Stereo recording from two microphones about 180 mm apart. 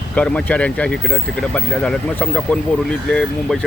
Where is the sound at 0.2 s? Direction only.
5° left (ahead or behind).